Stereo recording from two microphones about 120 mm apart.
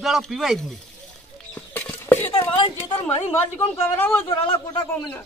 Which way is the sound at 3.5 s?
20° left (ahead or behind).